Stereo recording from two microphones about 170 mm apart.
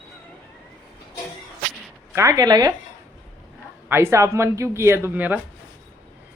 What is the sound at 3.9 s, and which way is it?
Speech, 15° right (ahead or behind).